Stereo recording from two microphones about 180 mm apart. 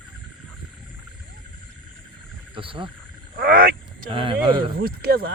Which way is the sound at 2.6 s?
30° right (ahead or behind).